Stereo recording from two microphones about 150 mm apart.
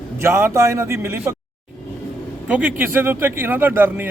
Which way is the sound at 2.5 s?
10° right (ahead or behind).